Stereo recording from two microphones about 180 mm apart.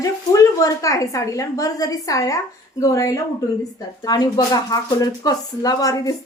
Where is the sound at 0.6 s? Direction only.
20° left (ahead or behind).